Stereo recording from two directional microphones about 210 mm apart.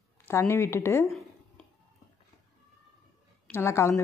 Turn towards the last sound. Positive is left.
turn(degrees=15)  # may be behind; listen again after turning